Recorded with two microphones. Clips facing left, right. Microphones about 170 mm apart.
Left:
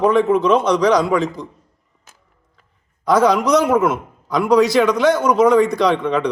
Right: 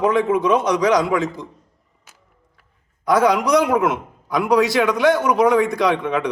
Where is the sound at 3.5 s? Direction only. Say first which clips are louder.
Left 2 dB; 15° right (ahead or behind).